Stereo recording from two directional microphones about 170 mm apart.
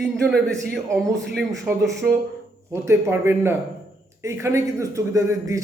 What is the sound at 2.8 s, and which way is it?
A man's voice, 15° right (ahead or behind).